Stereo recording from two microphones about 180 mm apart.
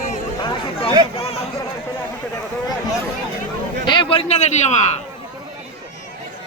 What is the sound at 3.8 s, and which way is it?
Speech, 25° left (ahead or behind).